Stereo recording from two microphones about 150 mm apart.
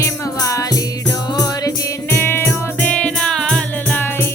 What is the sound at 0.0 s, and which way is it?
Music, 20° left (ahead or behind).